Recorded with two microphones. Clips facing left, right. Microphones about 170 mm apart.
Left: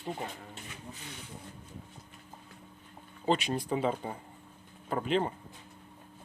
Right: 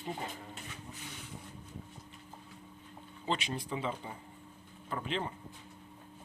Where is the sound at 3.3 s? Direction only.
45° left (ahead or behind).